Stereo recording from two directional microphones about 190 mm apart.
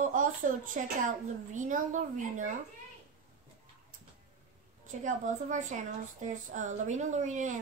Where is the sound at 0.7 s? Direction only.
40° right (ahead or behind).